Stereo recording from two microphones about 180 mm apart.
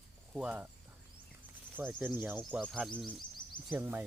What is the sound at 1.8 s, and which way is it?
Speech, 10° right (ahead or behind).